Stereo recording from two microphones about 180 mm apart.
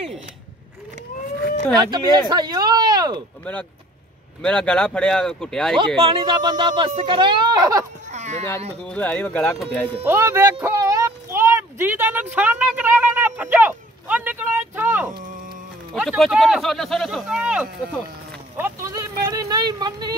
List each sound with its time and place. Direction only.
1.8 s speech: 25° right (ahead or behind)
4.4 s speech: 5° left (ahead or behind)
5.9 s speech: 30° right (ahead or behind)
8.1 s a sound: 40° right (ahead or behind)
8.8 s speech: 5° left (ahead or behind)
10.0 s speech: 15° right (ahead or behind)
10.6 s a sound: 15° right (ahead or behind)
15.9 s speech: 5° right (ahead or behind)
18.6 s a sound: 15° right (ahead or behind)